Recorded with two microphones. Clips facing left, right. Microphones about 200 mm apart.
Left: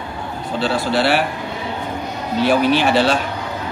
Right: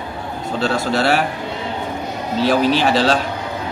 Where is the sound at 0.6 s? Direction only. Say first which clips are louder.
Even; 45° right (ahead or behind).